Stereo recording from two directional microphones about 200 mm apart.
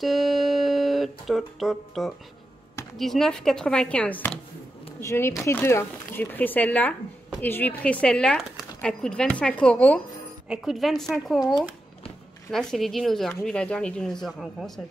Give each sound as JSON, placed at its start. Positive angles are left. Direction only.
{"t": 0.0, "sound": "speech", "side_deg": 0}